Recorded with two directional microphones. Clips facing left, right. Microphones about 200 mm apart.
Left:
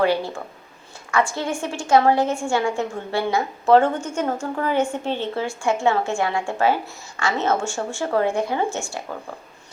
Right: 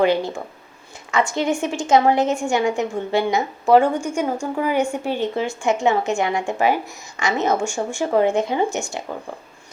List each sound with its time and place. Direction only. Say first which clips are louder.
0.0 s a woman's voice: right 2 dB; 20° right (ahead or behind)